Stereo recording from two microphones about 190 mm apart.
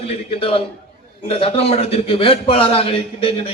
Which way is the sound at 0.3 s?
30° left (ahead or behind).